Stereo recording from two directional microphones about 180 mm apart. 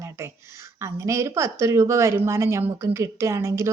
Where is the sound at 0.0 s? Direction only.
15° right (ahead or behind).